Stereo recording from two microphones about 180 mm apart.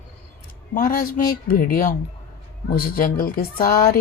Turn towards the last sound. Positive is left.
turn(degrees=55)  # may be behind; listen again after turning